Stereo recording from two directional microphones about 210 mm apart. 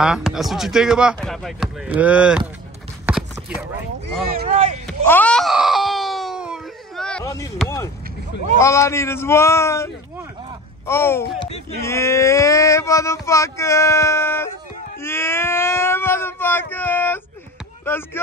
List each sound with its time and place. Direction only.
0.0 s speech: centre (ahead or behind)
3.1 s a sound: 5° right (ahead or behind)
4.5 s speech: 35° right (ahead or behind)
4.8 s wail: 10° left (ahead or behind)
8.5 s speech: 15° left (ahead or behind)
10.9 s speech: 10° left (ahead or behind)
11.3 s speech: 30° left (ahead or behind)
11.8 s speech: 15° left (ahead or behind)